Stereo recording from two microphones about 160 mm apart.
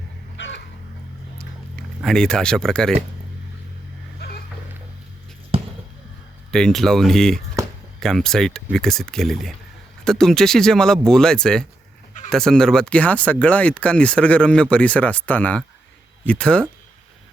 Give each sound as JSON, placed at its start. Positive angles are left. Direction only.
{"t": 0.3, "sound": "chicken", "side_deg": 90}
{"t": 1.4, "sound": "a sound", "side_deg": 5}
{"t": 5.5, "sound": "basketball bounce", "side_deg": -35}
{"t": 6.5, "sound": "speech", "side_deg": 5}